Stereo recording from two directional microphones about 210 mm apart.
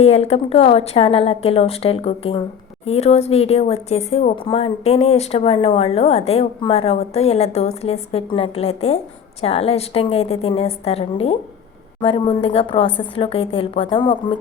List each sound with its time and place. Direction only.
0.0 s speech: 30° left (ahead or behind)